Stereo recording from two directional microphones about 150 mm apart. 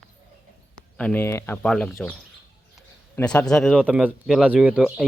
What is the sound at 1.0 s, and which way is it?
Speech, 10° left (ahead or behind).